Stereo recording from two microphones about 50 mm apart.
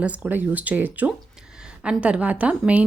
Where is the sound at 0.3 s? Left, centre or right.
Right.